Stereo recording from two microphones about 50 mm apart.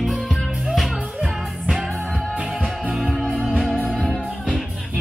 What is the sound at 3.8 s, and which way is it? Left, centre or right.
Music, centre.